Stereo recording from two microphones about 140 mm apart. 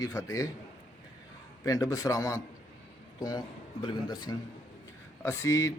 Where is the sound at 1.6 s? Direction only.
25° left (ahead or behind).